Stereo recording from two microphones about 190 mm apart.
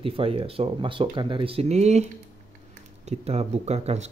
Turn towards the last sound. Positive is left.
turn(degrees=-35)  # may be behind; listen again after turning